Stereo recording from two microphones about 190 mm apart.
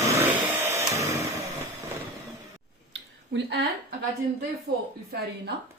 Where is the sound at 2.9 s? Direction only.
70° right (ahead or behind).